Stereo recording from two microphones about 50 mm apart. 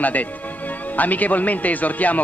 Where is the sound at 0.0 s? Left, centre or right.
Left.